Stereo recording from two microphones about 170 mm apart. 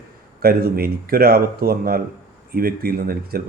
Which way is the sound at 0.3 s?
60° right (ahead or behind).